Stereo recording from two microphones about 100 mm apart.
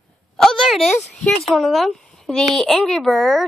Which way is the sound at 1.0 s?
Centre (ahead or behind).